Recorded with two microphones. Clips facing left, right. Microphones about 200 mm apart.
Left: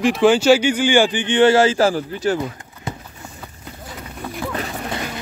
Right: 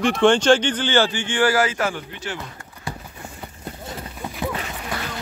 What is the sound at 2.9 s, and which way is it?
Clip-clop, 20° left (ahead or behind).